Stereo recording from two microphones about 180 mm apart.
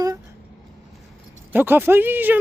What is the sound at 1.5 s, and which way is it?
Speech, 10° right (ahead or behind).